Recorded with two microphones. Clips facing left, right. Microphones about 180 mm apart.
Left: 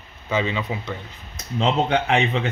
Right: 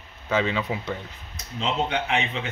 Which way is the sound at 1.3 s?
55° left (ahead or behind).